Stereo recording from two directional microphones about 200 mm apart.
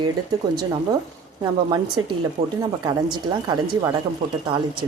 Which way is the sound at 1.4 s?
20° right (ahead or behind).